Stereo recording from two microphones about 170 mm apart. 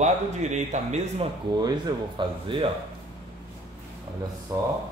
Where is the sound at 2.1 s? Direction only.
30° right (ahead or behind).